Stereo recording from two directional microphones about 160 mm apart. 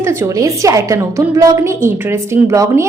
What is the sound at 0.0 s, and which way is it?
A woman's voice, 15° right (ahead or behind).